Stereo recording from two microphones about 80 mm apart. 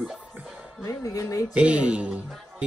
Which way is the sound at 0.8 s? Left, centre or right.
Left.